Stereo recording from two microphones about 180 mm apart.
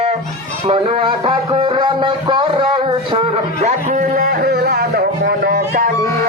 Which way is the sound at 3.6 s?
45° right (ahead or behind).